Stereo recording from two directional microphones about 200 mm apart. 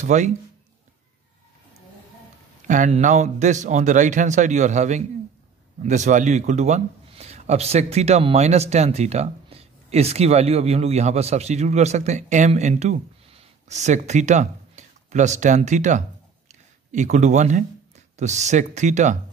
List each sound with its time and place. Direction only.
0.0 s speech: 35° right (ahead or behind)
2.6 s speech: 40° right (ahead or behind)